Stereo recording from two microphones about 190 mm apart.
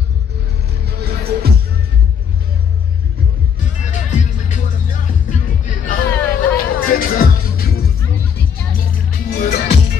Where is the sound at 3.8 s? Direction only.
40° left (ahead or behind).